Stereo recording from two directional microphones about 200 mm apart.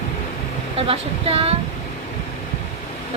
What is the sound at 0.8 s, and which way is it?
Speech, 30° right (ahead or behind).